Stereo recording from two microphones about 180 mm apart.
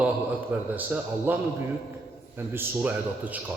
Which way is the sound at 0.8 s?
10° right (ahead or behind).